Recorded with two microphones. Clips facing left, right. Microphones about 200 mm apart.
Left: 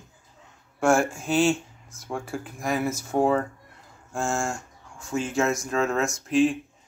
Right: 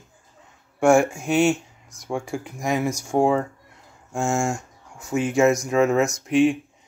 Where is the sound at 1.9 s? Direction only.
15° right (ahead or behind).